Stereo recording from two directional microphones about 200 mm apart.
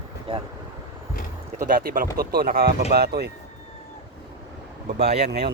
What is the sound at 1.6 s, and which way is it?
Speech, 45° right (ahead or behind).